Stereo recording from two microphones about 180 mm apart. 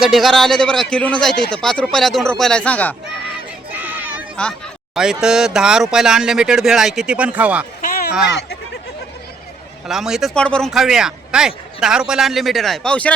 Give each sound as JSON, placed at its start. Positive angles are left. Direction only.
{"t": 0.0, "sound": "speech", "side_deg": 0}
{"t": 3.7, "sound": "chatter", "side_deg": -10}
{"t": 4.9, "sound": "speech", "side_deg": -5}
{"t": 7.8, "sound": "a sound", "side_deg": 50}
{"t": 8.3, "sound": "speech", "side_deg": 75}
{"t": 9.8, "sound": "speech", "side_deg": 0}